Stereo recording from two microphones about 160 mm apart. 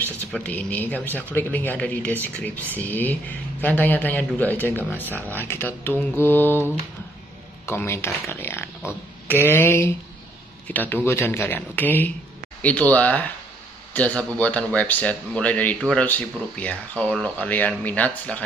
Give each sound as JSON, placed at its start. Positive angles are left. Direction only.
{"t": 0.3, "sound": "speech", "side_deg": 10}
{"t": 7.6, "sound": "speech", "side_deg": 15}